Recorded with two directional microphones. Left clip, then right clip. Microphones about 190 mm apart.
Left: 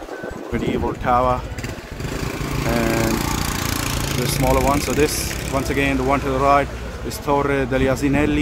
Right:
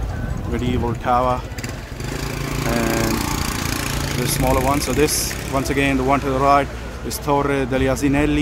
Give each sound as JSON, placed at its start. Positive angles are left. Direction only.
{"t": 0.7, "sound": "speech", "side_deg": -5}
{"t": 2.6, "sound": "a sound", "side_deg": 15}
{"t": 4.3, "sound": "speech", "side_deg": 5}
{"t": 4.6, "sound": "speech", "side_deg": -5}